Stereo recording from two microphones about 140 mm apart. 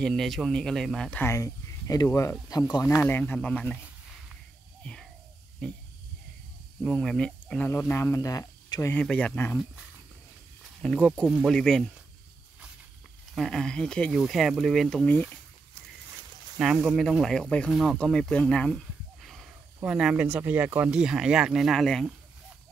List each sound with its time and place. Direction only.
0.0 s speech: centre (ahead or behind)
1.2 s speech: 20° left (ahead or behind)
5.6 s speech: 5° left (ahead or behind)
6.8 s speech: 5° left (ahead or behind); by 8.9 s 25° left (ahead or behind)
8.9 s speech: 10° left (ahead or behind)
10.8 s speech: 5° left (ahead or behind)
11.2 s speech: 5° right (ahead or behind)
11.5 s speech: 5° left (ahead or behind)
13.3 s speech: 5° left (ahead or behind)
15.0 s speech: 10° left (ahead or behind)
16.5 s speech: 5° right (ahead or behind)